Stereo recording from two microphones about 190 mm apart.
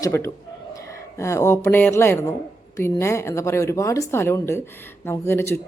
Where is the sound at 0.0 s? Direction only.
15° left (ahead or behind).